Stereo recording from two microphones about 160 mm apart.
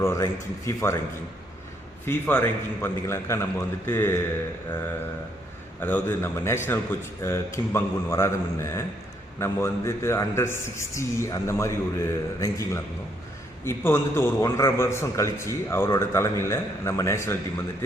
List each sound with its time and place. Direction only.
0.0 s a man's voice: 15° left (ahead or behind)
2.0 s a man's voice: 10° left (ahead or behind)
5.8 s a man's voice: 10° left (ahead or behind)